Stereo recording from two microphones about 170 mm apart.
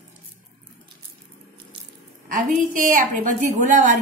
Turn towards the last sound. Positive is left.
turn(degrees=-45)  # may be behind; listen again after turning